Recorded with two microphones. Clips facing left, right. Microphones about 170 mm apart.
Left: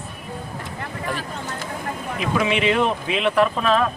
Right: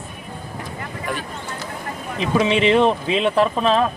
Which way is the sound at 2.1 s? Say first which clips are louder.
Right 4 dB; 30° right (ahead or behind).